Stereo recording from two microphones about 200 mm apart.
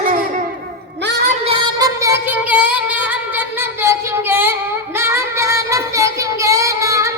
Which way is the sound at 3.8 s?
10° right (ahead or behind).